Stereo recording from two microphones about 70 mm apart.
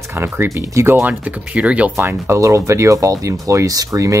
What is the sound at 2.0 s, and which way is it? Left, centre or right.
Speech, right.